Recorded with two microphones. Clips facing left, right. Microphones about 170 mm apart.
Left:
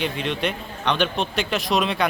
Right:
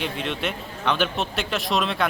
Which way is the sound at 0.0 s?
Centre (ahead or behind).